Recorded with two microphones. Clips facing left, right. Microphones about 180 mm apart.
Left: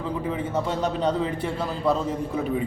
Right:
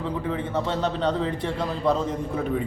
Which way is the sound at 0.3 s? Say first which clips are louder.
Even; 5° left (ahead or behind).